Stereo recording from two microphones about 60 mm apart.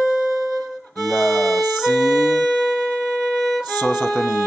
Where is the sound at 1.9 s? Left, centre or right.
Centre.